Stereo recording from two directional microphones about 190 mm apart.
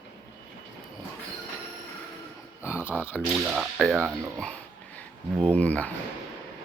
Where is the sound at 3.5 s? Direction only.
Centre (ahead or behind).